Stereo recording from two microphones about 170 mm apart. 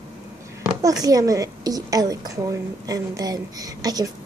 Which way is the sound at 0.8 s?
20° right (ahead or behind).